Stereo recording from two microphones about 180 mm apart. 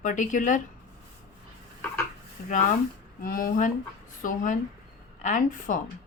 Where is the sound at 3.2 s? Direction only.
50° left (ahead or behind).